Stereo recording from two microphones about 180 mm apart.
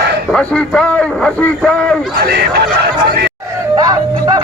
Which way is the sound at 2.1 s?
65° right (ahead or behind).